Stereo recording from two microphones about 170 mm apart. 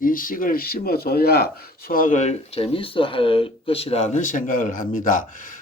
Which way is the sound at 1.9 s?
50° left (ahead or behind).